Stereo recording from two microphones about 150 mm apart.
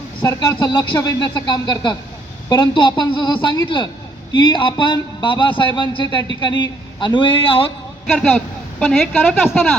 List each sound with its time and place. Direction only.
0.2 s a man's voice: 30° left (ahead or behind)
8.0 s speech: centre (ahead or behind)
8.8 s a woman's voice: 10° left (ahead or behind)